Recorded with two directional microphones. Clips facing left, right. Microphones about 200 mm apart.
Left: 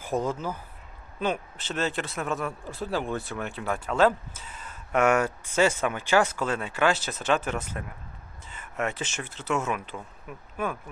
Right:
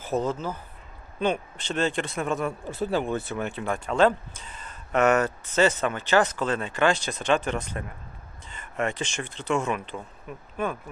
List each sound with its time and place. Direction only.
0.0 s speech: 10° left (ahead or behind)